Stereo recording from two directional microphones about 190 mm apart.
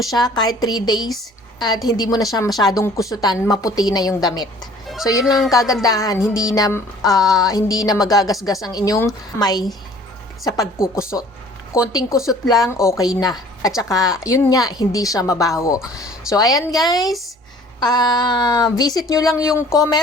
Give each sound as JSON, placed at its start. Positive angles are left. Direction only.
{"t": 0.1, "sound": "speech", "side_deg": 20}
{"t": 5.2, "sound": "speech", "side_deg": 0}
{"t": 5.5, "sound": "speech", "side_deg": 15}
{"t": 11.9, "sound": "speech", "side_deg": 15}